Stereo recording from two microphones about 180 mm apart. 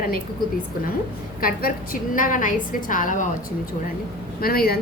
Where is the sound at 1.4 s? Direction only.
50° left (ahead or behind).